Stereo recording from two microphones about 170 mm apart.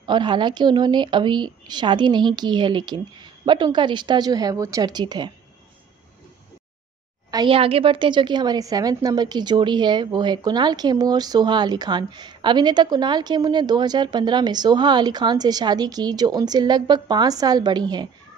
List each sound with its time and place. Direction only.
0.0 s a woman's voice: 25° right (ahead or behind)
7.2 s a woman's voice: 25° right (ahead or behind)